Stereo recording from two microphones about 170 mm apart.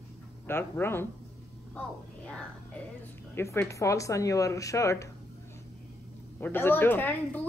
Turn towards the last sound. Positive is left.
turn(degrees=10)  # may be behind; listen again after turning